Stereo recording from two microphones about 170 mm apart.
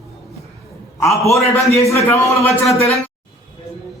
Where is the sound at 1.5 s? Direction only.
15° left (ahead or behind).